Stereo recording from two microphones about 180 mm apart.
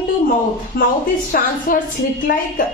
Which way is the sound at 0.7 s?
55° left (ahead or behind).